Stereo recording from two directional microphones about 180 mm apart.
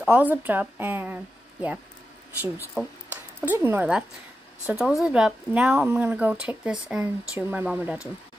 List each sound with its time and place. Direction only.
0.0 s speech: 10° right (ahead or behind)
2.5 s a sound: 5° right (ahead or behind)
3.4 s speech: 15° right (ahead or behind)